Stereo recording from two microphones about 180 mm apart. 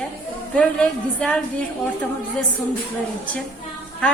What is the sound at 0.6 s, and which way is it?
Speech, 5° left (ahead or behind).